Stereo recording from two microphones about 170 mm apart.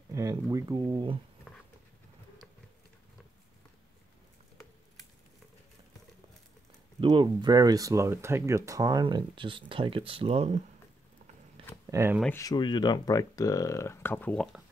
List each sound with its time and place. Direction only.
0.1 s speech: 20° right (ahead or behind)
1.5 s dog: centre (ahead or behind)
7.0 s speech: 30° right (ahead or behind)
11.9 s speech: 15° right (ahead or behind)
12.4 s speech: 25° left (ahead or behind); by 14.6 s 5° left (ahead or behind)